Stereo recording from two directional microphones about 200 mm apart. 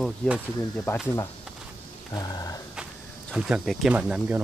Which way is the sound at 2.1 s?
20° left (ahead or behind).